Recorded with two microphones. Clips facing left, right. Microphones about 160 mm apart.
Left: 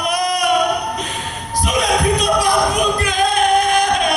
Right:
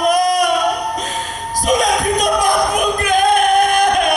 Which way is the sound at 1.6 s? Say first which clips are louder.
Right 2 dB; 40° right (ahead or behind).